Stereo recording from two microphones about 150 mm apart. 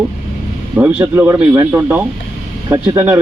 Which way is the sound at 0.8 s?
10° right (ahead or behind).